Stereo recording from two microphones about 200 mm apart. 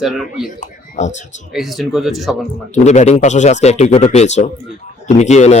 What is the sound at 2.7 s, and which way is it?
A man's voice, 35° left (ahead or behind).